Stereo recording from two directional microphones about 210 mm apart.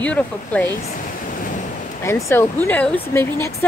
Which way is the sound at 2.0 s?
10° left (ahead or behind).